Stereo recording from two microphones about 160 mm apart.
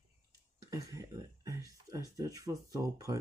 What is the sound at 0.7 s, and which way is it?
Speech, 20° right (ahead or behind).